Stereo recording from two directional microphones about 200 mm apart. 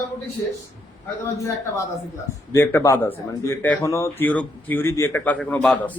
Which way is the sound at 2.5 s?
15° left (ahead or behind).